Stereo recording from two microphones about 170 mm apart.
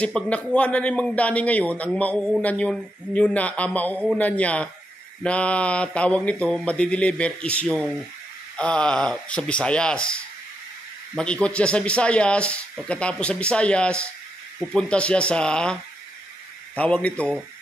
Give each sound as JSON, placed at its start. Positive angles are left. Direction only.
{"t": 0.0, "sound": "speech", "side_deg": 5}